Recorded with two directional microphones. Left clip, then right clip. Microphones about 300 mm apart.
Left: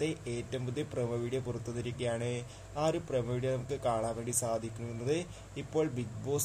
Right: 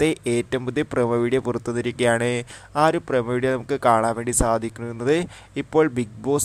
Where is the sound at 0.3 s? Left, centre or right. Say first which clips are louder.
Right 15 dB; right.